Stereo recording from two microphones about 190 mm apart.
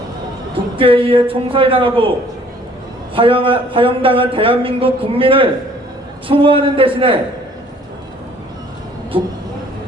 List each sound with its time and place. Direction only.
0.5 s speech: 30° right (ahead or behind)
3.2 s speech: 30° right (ahead or behind)